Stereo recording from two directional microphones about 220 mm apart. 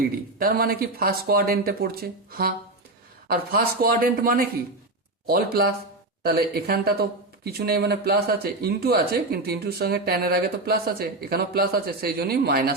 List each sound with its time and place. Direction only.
0.3 s speech: 40° right (ahead or behind)